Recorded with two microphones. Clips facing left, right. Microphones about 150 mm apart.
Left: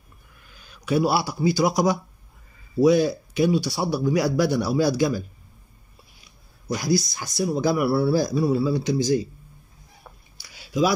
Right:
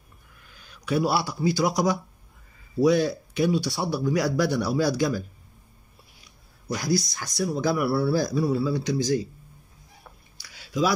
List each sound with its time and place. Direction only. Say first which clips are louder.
0.8 s speech: left 2 dB; 10° left (ahead or behind)
6.7 s speech: left 2 dB; 10° left (ahead or behind)
7.8 s speech: left 3 dB; 25° left (ahead or behind)
8.4 s speech: left 3 dB; 10° left (ahead or behind)
10.5 s a sound: left 3 dB; 15° left (ahead or behind)